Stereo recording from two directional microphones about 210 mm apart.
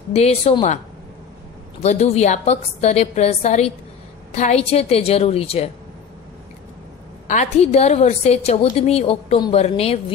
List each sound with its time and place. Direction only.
0.1 s a woman's voice: 30° left (ahead or behind)
1.8 s a woman's voice: 30° left (ahead or behind)
7.2 s a woman's voice: 35° left (ahead or behind)